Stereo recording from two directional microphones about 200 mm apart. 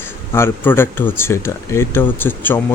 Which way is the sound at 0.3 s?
10° left (ahead or behind).